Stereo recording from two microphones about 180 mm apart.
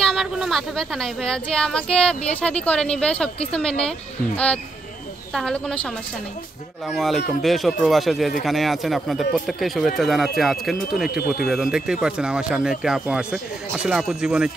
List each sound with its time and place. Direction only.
0.0 s speech: centre (ahead or behind)
5.3 s speech: 5° left (ahead or behind)
11.1 s speech: 60° left (ahead or behind)
11.4 s speech: centre (ahead or behind)